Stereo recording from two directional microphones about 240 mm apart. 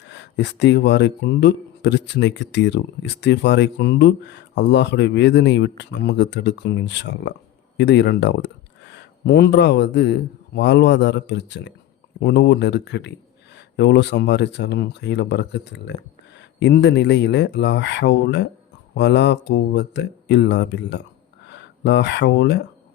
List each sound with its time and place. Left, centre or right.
0.1 s a man's voice: left